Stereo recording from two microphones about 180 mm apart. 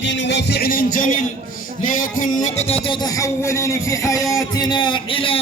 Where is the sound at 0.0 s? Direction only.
75° left (ahead or behind).